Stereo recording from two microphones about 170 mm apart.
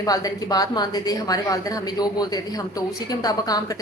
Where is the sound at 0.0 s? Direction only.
20° left (ahead or behind).